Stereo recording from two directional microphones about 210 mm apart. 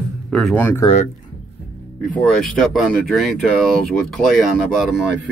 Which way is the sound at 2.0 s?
Centre (ahead or behind).